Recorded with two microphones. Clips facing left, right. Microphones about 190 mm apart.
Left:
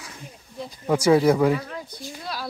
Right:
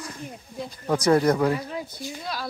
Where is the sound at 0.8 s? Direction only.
5° left (ahead or behind).